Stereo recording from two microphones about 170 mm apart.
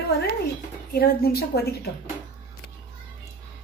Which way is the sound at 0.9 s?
65° left (ahead or behind).